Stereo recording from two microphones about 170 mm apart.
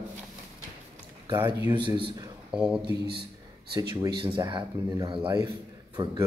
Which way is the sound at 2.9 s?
70° right (ahead or behind).